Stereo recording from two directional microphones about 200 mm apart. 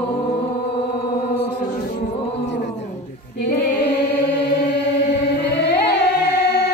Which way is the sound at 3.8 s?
55° left (ahead or behind).